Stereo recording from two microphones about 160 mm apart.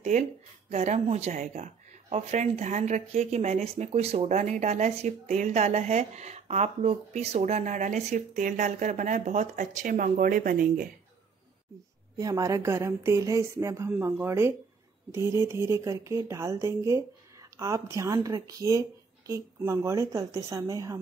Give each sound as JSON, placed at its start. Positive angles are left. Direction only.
{"t": 0.1, "sound": "speech", "side_deg": -45}
{"t": 12.2, "sound": "speech", "side_deg": -20}